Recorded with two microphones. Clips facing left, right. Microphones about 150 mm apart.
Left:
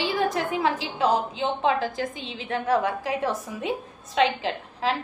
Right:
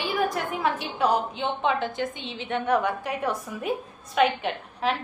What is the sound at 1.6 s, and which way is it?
A woman's voice, 35° left (ahead or behind).